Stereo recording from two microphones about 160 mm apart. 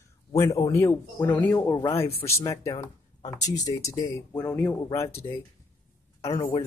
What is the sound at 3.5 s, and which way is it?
Speech, 20° left (ahead or behind).